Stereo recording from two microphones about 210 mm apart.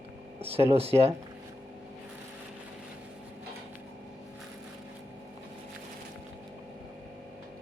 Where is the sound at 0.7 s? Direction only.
30° right (ahead or behind).